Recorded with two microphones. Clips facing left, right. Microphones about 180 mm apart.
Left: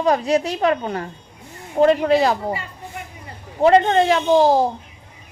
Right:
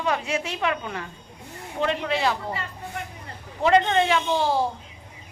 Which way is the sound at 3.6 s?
40° left (ahead or behind).